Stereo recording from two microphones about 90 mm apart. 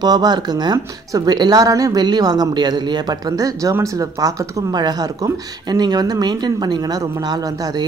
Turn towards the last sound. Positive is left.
turn(degrees=-45)  # may be behind; listen again after turning